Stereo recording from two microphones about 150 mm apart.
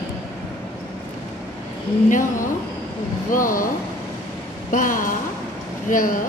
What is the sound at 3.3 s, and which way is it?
Speech, 65° left (ahead or behind).